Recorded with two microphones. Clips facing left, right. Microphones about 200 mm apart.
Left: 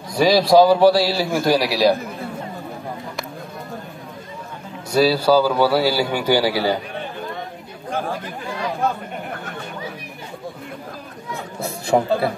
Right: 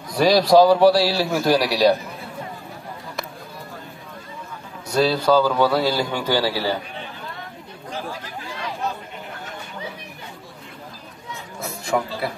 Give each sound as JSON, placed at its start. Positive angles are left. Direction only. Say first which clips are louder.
{"t": 0.1, "sound": "a man's voice", "louder": "left 1 dB", "side_deg": 0}
{"t": 4.9, "sound": "a man's voice", "louder": "left 2 dB", "side_deg": 5}
{"t": 7.9, "sound": "chatter", "louder": "left 6 dB", "side_deg": 55}
{"t": 11.6, "sound": "a man's voice", "louder": "left 5 dB", "side_deg": 30}